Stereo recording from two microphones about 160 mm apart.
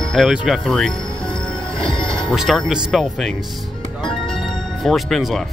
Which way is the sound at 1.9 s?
5° left (ahead or behind).